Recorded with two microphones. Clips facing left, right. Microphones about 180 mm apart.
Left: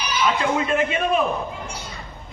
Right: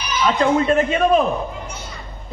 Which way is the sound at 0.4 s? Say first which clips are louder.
Right 5 dB; 40° right (ahead or behind).